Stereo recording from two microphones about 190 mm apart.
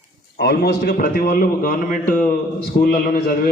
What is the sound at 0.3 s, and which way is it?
A man's voice, 55° left (ahead or behind).